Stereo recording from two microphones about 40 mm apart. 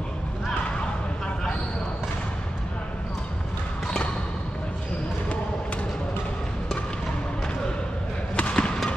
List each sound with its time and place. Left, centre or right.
8.4 s basketball bounce: left